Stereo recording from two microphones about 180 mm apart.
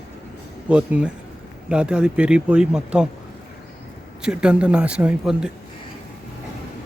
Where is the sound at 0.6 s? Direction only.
5° right (ahead or behind).